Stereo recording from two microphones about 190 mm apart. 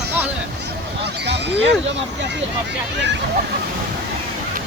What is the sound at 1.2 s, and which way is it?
Speech, 65° right (ahead or behind).